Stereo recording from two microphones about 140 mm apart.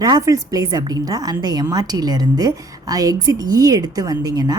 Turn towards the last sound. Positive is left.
turn(degrees=-30)  # may be behind; listen again after turning